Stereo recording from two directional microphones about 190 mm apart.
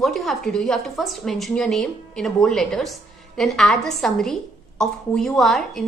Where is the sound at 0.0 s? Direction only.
Centre (ahead or behind).